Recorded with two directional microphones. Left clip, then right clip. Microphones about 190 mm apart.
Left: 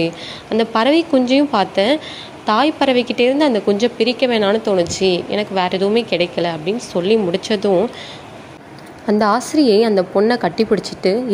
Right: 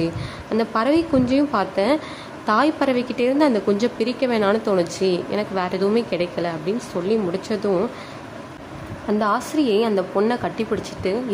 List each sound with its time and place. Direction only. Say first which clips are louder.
0.0 s a woman's voice: left 5 dB; 10° left (ahead or behind)
9.0 s a woman's voice: left 5 dB; 25° left (ahead or behind)